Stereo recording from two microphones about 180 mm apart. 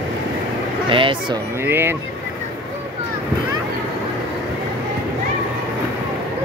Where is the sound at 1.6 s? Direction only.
10° right (ahead or behind).